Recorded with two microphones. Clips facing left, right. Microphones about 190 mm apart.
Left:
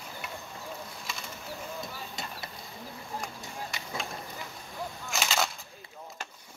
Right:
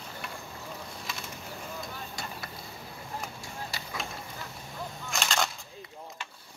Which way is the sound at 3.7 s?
35° right (ahead or behind).